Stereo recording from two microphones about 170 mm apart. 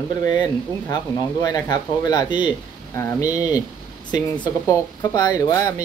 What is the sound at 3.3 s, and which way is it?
Speech, 10° right (ahead or behind).